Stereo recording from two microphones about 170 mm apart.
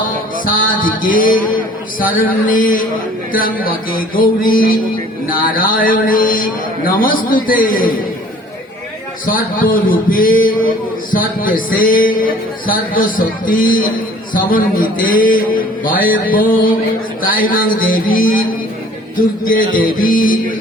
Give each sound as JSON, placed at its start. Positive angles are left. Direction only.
{"t": 0.4, "sound": "speech", "side_deg": 55}
{"t": 9.2, "sound": "speech", "side_deg": 55}